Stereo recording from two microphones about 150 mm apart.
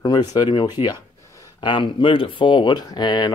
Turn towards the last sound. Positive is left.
turn(degrees=30)  # may be behind; listen again after turning